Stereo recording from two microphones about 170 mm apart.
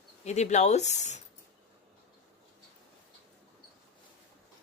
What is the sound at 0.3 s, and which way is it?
Speech, 40° left (ahead or behind).